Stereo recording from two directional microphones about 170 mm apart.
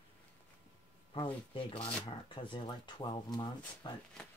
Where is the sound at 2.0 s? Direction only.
30° left (ahead or behind).